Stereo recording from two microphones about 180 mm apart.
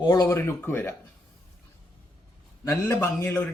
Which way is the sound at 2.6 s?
15° left (ahead or behind).